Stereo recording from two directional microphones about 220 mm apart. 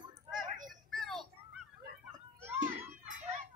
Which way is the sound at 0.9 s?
Centre (ahead or behind).